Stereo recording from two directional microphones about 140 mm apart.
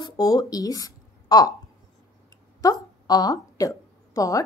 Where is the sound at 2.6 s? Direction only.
25° left (ahead or behind).